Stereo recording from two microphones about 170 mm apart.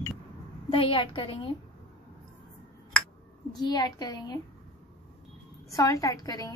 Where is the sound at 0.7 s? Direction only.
30° left (ahead or behind).